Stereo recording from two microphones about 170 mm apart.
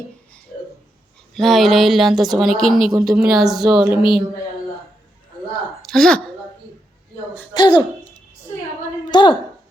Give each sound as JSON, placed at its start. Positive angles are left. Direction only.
{"t": 1.3, "sound": "a woman's voice", "side_deg": 0}
{"t": 5.8, "sound": "a woman's voice", "side_deg": 0}
{"t": 7.5, "sound": "speech", "side_deg": 25}
{"t": 9.0, "sound": "a sound", "side_deg": 25}